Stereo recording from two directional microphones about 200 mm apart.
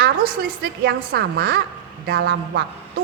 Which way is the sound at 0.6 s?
55° right (ahead or behind).